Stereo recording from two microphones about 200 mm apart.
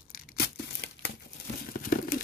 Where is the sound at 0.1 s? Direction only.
50° left (ahead or behind).